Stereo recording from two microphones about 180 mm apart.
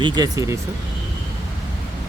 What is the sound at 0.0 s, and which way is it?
Speech, 20° right (ahead or behind).